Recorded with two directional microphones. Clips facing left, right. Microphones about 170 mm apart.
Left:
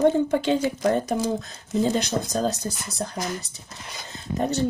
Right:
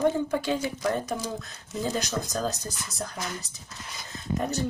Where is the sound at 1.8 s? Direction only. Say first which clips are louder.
Left 6 dB; 25° left (ahead or behind).